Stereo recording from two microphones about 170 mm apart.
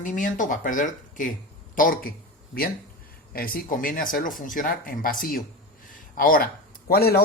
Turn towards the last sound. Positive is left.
turn(degrees=65)  # may be behind; listen again after turning